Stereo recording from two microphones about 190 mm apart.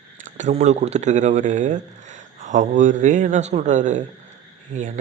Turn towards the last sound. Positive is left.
turn(degrees=-40)  # may be behind; listen again after turning